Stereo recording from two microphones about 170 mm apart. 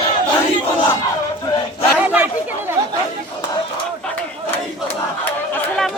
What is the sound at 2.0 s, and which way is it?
Chatter, 10° right (ahead or behind).